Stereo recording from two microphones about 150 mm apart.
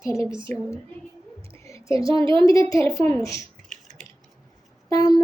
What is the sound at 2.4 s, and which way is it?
A woman's voice, 25° left (ahead or behind).